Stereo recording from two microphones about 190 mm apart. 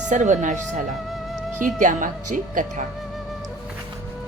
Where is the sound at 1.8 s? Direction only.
45° right (ahead or behind).